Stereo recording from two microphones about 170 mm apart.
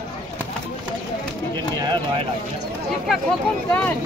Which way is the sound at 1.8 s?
25° right (ahead or behind).